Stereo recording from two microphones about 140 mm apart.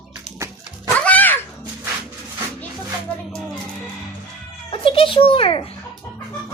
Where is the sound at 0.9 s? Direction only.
10° left (ahead or behind).